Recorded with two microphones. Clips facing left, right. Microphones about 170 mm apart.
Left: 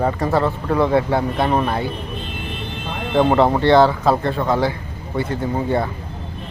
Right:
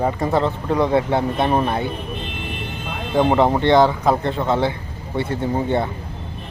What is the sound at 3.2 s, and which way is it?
Speech, 15° right (ahead or behind).